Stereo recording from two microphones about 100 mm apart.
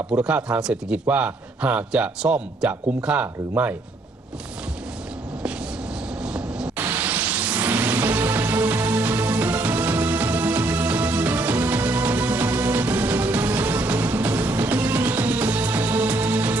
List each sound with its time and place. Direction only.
0.2 s a man's voice: 10° right (ahead or behind)
6.2 s vehicle: 10° right (ahead or behind)
6.8 s music: 20° right (ahead or behind)